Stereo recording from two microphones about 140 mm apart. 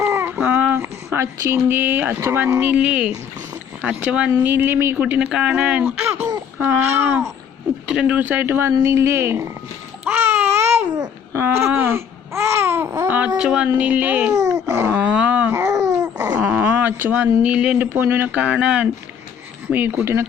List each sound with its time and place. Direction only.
0.0 s a sound: 15° right (ahead or behind)
0.3 s a woman's voice: 10° right (ahead or behind)
10.0 s babbling: 10° right (ahead or behind)
13.1 s a sound: 10° right (ahead or behind)
13.7 s speech: 10° right (ahead or behind)
14.3 s dog: 25° right (ahead or behind)
14.8 s speech: 10° right (ahead or behind)
15.5 s a sound: 25° right (ahead or behind)
16.4 s speech: 10° right (ahead or behind)